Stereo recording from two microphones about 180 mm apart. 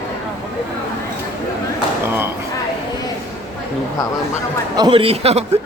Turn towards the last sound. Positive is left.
turn(degrees=-35)  # may be behind; listen again after turning